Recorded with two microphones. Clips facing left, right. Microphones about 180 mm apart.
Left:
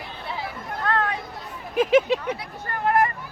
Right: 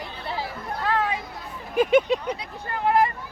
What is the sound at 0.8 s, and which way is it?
Chatter, 5° right (ahead or behind).